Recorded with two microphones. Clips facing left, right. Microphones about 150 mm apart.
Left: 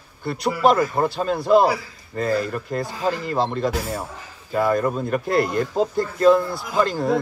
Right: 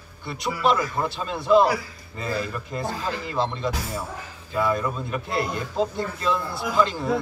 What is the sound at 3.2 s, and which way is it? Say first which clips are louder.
Speech: left 4 dB; 45° left (ahead or behind).